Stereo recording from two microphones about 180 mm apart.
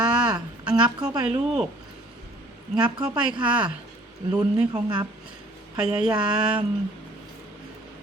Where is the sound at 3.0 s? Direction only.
5° right (ahead or behind).